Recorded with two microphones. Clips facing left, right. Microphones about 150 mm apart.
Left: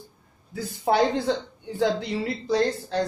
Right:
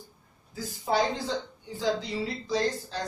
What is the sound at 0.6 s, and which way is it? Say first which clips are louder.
Speech: left 5 dB; 65° left (ahead or behind).